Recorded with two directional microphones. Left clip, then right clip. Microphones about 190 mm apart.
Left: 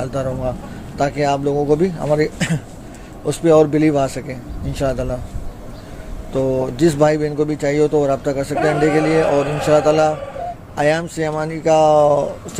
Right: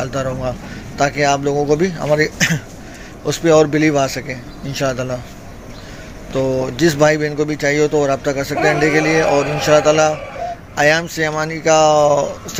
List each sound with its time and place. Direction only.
0.0 s a man's voice: 5° left (ahead or behind)
6.3 s a man's voice: 5° left (ahead or behind)